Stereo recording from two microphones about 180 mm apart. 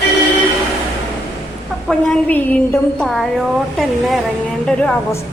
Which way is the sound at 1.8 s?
5° left (ahead or behind).